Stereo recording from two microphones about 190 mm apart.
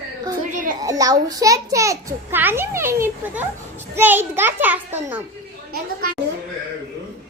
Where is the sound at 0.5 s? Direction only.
45° right (ahead or behind).